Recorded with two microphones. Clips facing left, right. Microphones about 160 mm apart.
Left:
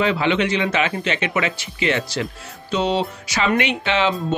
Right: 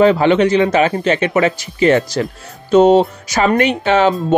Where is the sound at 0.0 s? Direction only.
45° right (ahead or behind).